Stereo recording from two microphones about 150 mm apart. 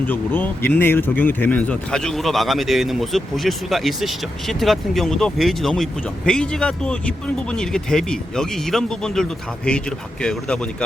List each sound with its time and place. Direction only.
0.1 s speech: 15° left (ahead or behind)